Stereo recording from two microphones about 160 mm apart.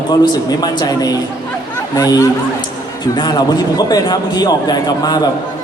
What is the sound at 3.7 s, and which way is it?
A man's voice, 25° left (ahead or behind).